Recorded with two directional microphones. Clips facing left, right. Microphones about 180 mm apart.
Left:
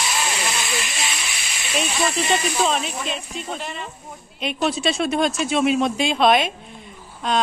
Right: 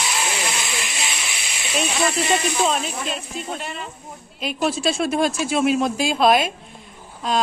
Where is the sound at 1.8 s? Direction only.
Centre (ahead or behind).